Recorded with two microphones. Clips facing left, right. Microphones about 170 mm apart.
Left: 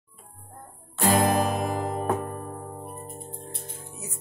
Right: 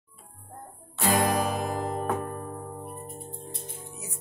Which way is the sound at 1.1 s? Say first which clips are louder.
Left 2 dB; centre (ahead or behind).